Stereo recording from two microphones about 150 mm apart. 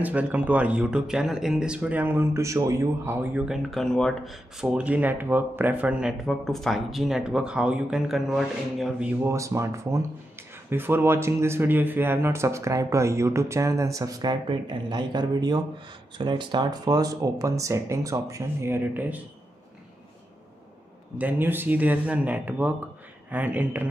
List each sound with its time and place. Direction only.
0.0 s speech: 10° right (ahead or behind)
9.2 s speech: 20° right (ahead or behind)
21.2 s speech: 10° right (ahead or behind)